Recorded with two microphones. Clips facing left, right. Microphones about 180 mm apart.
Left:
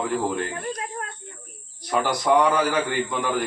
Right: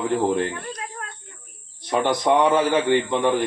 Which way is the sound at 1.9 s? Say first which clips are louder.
Right 1 dB; 25° right (ahead or behind).